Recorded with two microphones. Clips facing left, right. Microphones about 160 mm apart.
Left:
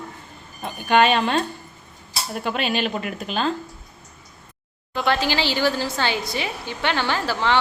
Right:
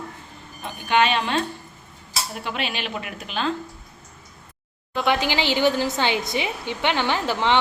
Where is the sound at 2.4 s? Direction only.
45° left (ahead or behind).